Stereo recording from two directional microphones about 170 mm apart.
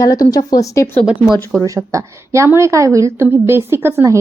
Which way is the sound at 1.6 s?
20° right (ahead or behind).